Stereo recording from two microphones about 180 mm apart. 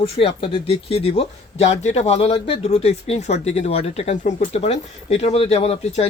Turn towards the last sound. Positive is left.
turn(degrees=35)  # may be behind; listen again after turning